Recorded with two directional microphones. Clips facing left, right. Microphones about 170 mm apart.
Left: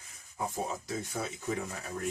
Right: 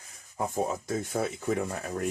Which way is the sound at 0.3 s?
50° right (ahead or behind).